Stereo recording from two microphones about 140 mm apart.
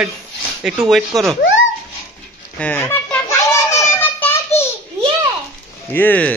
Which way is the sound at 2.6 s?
15° left (ahead or behind).